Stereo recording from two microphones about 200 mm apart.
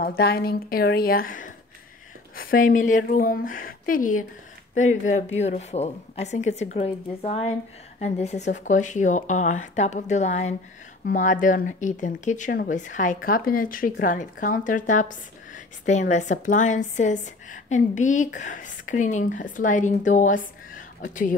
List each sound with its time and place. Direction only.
0.0 s a woman's voice: 50° left (ahead or behind)